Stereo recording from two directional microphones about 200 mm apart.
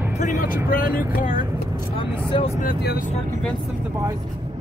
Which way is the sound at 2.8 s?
50° left (ahead or behind).